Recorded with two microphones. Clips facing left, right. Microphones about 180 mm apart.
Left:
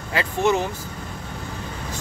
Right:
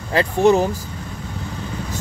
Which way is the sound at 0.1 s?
35° right (ahead or behind).